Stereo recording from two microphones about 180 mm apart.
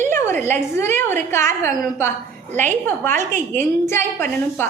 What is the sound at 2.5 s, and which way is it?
Speech, 40° right (ahead or behind).